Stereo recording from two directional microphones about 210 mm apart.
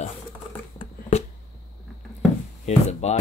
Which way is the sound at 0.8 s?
30° left (ahead or behind).